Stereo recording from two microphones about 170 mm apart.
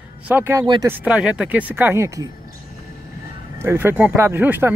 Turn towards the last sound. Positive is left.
turn(degrees=-10)  # may be behind; listen again after turning